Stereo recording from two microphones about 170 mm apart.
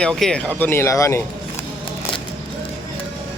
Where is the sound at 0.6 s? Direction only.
15° left (ahead or behind).